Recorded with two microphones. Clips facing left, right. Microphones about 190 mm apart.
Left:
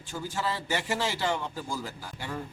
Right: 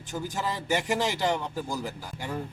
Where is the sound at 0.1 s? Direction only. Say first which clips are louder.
Right 1 dB; 20° right (ahead or behind).